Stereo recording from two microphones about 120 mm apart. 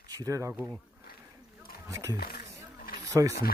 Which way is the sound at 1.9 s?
25° right (ahead or behind).